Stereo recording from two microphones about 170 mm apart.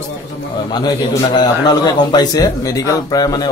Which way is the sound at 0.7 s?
25° left (ahead or behind).